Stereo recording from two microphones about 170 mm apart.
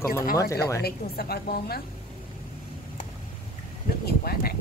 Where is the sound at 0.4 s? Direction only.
20° left (ahead or behind).